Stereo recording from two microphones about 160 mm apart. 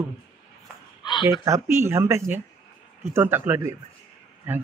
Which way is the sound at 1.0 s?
25° left (ahead or behind).